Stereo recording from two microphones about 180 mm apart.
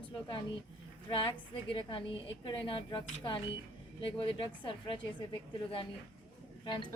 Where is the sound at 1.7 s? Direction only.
30° left (ahead or behind).